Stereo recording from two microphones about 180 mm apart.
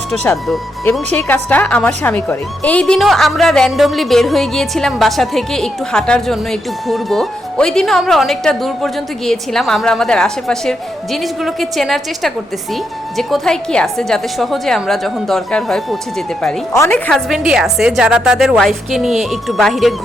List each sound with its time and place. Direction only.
0.3 s a woman's voice: 10° left (ahead or behind)
16.7 s a woman's voice: 15° left (ahead or behind)
17.1 s a woman's voice: centre (ahead or behind)